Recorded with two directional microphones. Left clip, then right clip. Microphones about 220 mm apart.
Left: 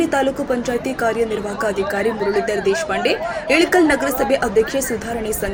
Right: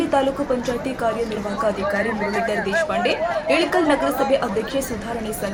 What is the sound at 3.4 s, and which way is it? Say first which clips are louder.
A woman's voice: left 5 dB; centre (ahead or behind).